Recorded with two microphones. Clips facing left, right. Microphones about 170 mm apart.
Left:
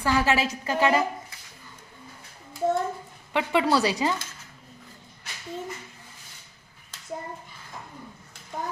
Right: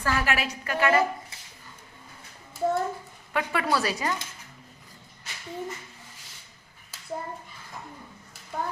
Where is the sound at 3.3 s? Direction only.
20° left (ahead or behind).